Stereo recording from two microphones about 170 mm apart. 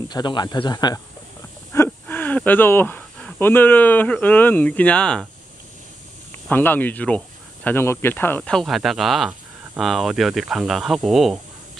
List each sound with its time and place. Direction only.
0.1 s speech: 25° left (ahead or behind)
1.7 s speech: 15° left (ahead or behind)
6.5 s speech: 10° left (ahead or behind)